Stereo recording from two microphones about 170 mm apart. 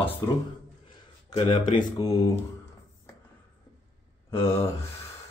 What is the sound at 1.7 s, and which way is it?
Speech, 25° left (ahead or behind).